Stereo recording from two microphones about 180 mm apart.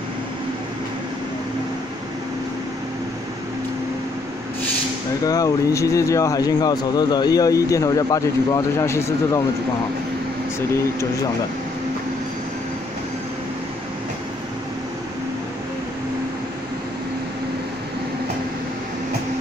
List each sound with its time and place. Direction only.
5.2 s speech: 20° left (ahead or behind)